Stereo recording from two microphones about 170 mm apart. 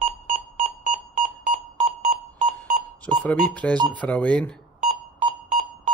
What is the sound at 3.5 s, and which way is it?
Speech, 10° left (ahead or behind).